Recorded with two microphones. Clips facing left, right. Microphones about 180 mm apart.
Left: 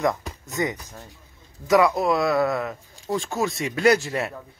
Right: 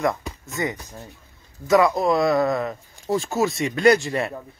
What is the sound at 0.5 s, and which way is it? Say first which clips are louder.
Speech: left 1 dB; 20° left (ahead or behind).